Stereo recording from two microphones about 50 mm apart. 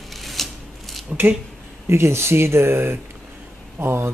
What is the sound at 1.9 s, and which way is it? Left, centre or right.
Speech, right.